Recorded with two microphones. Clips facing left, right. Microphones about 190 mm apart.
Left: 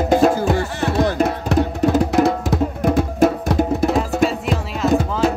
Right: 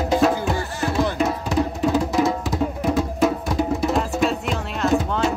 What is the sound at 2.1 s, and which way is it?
Music, 60° left (ahead or behind).